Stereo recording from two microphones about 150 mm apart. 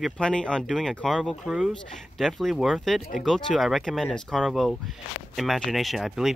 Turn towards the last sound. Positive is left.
turn(degrees=0)  # may be behind; listen again after turning